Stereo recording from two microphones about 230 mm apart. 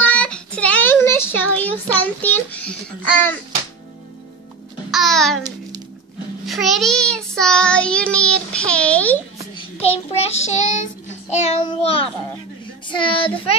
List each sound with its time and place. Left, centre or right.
0.0 s child singing: centre
2.0 s a child's voice: centre
4.9 s child singing: centre
6.4 s child singing: centre
9.6 s child singing: left
11.6 s a child's voice: left